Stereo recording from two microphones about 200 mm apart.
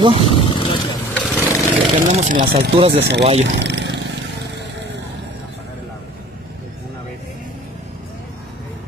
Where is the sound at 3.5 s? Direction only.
60° right (ahead or behind).